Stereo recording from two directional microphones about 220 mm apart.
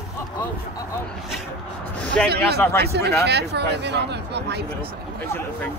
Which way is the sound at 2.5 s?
10° left (ahead or behind).